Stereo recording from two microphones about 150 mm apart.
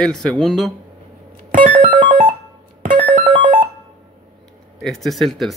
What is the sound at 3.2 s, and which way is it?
Music, 35° right (ahead or behind).